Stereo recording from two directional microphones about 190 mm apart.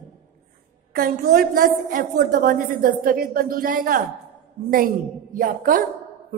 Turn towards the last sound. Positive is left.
turn(degrees=-45)  # may be behind; listen again after turning